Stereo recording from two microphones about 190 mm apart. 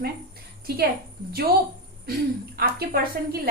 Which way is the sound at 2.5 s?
55° right (ahead or behind).